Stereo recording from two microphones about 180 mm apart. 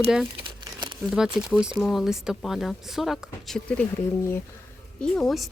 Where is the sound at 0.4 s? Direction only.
25° right (ahead or behind).